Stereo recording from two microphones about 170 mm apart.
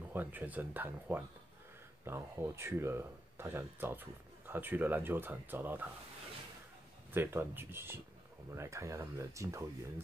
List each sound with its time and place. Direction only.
0.1 s speech: 10° right (ahead or behind)
7.1 s speech: 15° right (ahead or behind)